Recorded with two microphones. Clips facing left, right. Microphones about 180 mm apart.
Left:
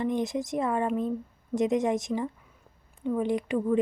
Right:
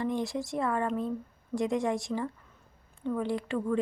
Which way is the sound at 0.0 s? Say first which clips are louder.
Left 3 dB; 20° left (ahead or behind).